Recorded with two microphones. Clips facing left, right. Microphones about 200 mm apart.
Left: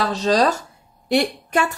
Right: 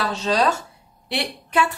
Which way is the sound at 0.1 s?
40° left (ahead or behind).